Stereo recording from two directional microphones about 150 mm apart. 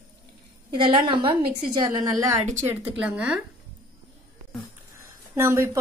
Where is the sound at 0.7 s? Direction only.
35° right (ahead or behind).